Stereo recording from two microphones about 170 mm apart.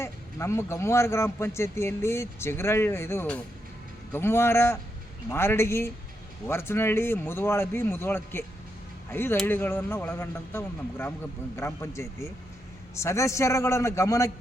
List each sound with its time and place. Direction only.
0.0 s speech: 15° left (ahead or behind)